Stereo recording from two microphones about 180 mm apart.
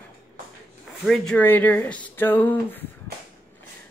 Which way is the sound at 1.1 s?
5° left (ahead or behind).